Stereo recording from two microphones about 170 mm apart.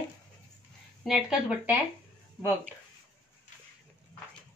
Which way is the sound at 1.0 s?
5° right (ahead or behind).